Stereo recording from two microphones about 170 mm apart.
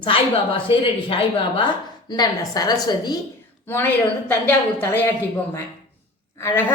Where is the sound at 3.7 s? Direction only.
10° left (ahead or behind).